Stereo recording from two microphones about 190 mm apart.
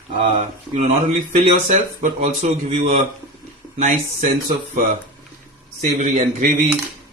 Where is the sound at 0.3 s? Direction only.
35° right (ahead or behind).